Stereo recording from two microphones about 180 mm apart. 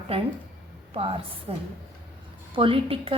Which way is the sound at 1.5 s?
30° right (ahead or behind).